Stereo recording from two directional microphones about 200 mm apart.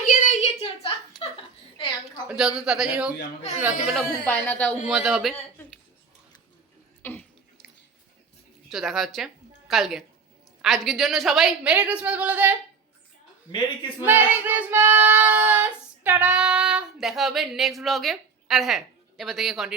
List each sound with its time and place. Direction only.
0.0 s a sound: 40° left (ahead or behind)
2.2 s child singing: centre (ahead or behind)
7.0 s a sound: 10° left (ahead or behind)
8.7 s child singing: centre (ahead or behind)
9.6 s a woman's voice: centre (ahead or behind)
10.6 s child singing: centre (ahead or behind)
14.0 s child singing: 10° right (ahead or behind)